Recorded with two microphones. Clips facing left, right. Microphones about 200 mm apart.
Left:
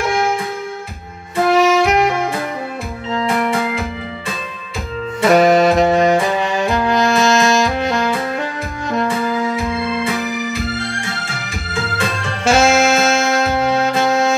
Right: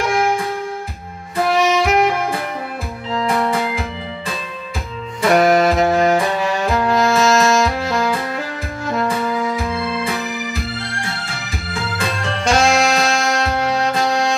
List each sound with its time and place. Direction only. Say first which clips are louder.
1.5 s music: left 3 dB; centre (ahead or behind)
3.2 s music: even; 25° left (ahead or behind)
5.3 s saxophone: left 2 dB; centre (ahead or behind)
12.4 s saxophone: left 3 dB; 5° left (ahead or behind)